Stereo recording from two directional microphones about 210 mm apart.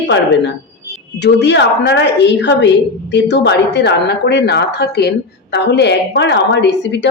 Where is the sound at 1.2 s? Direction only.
55° left (ahead or behind).